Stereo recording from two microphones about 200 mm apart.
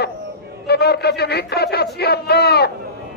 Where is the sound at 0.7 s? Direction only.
55° left (ahead or behind).